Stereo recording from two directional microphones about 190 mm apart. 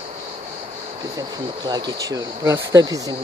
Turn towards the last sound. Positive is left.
turn(degrees=-20)  # may be behind; listen again after turning